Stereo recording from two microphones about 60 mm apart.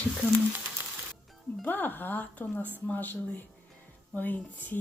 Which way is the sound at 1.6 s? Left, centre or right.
Left.